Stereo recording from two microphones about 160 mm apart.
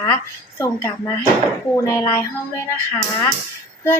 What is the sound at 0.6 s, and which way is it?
Speech, 15° left (ahead or behind).